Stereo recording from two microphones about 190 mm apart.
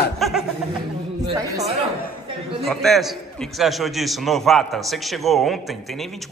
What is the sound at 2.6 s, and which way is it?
A man's voice, centre (ahead or behind).